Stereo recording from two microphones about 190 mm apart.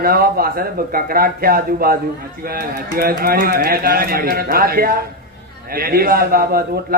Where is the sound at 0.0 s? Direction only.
50° right (ahead or behind).